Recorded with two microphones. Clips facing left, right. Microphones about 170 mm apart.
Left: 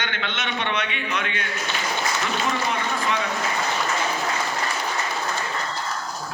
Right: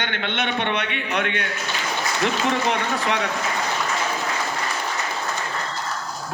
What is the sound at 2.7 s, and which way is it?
Speech, 65° right (ahead or behind).